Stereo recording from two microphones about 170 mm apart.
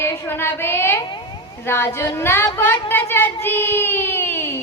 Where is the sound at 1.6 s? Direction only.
15° left (ahead or behind).